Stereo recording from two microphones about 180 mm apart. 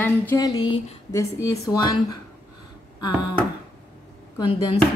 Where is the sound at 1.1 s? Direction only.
15° left (ahead or behind).